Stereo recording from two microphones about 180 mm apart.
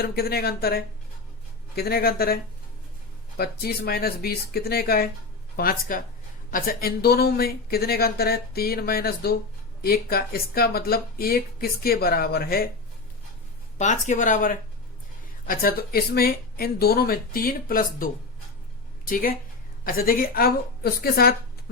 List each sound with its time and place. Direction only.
0.0 s speech: 60° left (ahead or behind)
13.7 s speech: 40° left (ahead or behind); by 21.3 s 55° left (ahead or behind)